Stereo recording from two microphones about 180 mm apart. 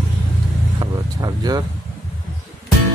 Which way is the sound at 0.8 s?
20° right (ahead or behind).